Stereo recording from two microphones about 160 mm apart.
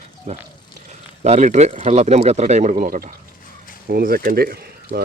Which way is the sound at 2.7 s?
60° right (ahead or behind).